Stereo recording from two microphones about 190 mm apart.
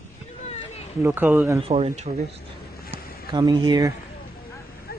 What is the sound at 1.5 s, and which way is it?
Speech, 30° right (ahead or behind).